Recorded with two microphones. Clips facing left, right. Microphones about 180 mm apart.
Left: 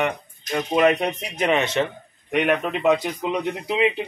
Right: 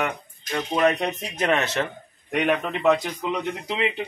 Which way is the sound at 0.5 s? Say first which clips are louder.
Left 3 dB; 15° left (ahead or behind).